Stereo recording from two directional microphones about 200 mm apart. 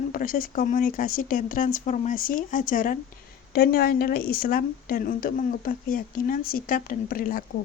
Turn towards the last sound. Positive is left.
turn(degrees=45)  # may be behind; listen again after turning